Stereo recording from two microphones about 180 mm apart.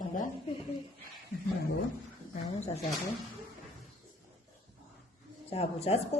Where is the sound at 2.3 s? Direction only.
40° left (ahead or behind).